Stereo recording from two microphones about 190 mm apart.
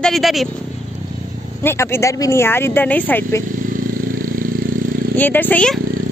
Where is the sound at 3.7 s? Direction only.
45° right (ahead or behind).